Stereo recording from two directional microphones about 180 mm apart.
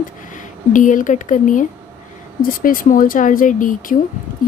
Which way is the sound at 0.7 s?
45° left (ahead or behind).